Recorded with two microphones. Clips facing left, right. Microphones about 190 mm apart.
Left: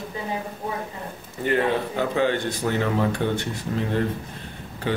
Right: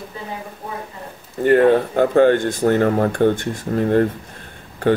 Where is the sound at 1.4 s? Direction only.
50° right (ahead or behind).